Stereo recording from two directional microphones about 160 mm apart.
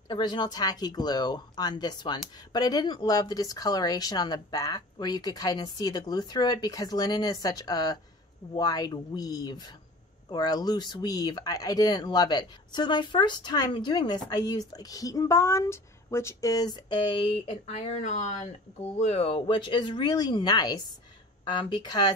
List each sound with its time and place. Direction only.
0.1 s speech: 30° left (ahead or behind)